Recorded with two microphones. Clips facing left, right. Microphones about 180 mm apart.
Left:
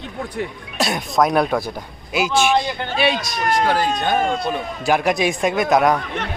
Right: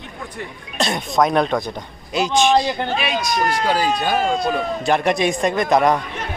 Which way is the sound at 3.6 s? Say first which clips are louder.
Even; 10° right (ahead or behind).